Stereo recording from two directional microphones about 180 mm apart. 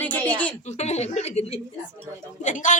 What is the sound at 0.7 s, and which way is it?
A woman's voice, 40° left (ahead or behind).